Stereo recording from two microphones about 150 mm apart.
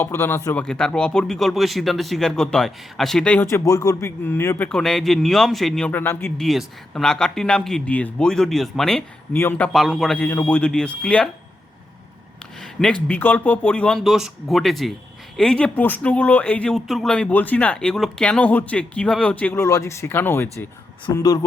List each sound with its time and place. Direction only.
0.0 s speech: 15° left (ahead or behind)
0.6 s speech: 5° left (ahead or behind)
3.4 s speech: 20° left (ahead or behind)
6.3 s speech: centre (ahead or behind)
9.3 s speech: 15° left (ahead or behind)
9.7 s speech: centre (ahead or behind)
10.2 s speech: 15° left (ahead or behind)
12.8 s speech: 10° left (ahead or behind); by 21.4 s 25° left (ahead or behind)